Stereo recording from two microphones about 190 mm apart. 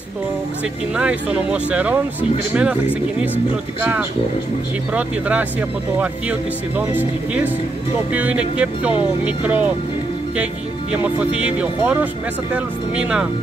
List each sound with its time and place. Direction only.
0.9 s speech: 5° right (ahead or behind)
4.9 s speech: 5° right (ahead or behind)
6.8 s speech: 10° right (ahead or behind)
10.9 s speech: 5° right (ahead or behind)